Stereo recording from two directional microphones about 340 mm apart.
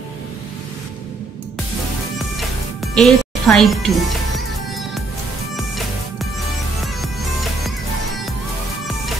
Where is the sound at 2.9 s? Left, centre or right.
Centre.